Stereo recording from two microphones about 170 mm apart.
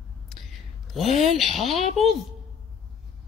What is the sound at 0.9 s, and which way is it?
Speech, centre (ahead or behind).